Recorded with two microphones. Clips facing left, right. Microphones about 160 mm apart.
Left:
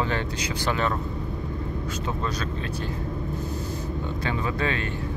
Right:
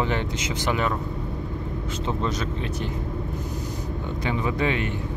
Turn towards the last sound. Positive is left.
turn(degrees=-15)  # may be behind; listen again after turning